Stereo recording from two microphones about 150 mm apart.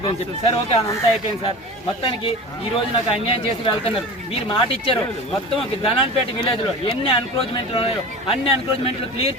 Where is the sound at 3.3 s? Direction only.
35° left (ahead or behind).